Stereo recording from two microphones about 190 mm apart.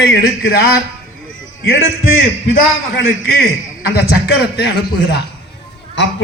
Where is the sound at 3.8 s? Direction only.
55° left (ahead or behind).